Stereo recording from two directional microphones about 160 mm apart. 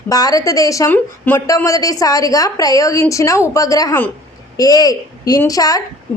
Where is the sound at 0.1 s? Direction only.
20° left (ahead or behind).